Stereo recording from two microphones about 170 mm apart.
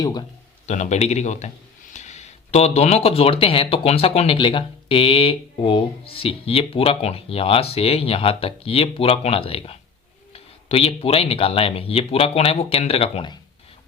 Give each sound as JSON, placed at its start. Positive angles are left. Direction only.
{"t": 0.0, "sound": "speech", "side_deg": 25}
{"t": 0.7, "sound": "speech", "side_deg": 40}